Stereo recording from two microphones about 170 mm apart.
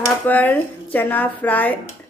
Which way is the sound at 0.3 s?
10° left (ahead or behind).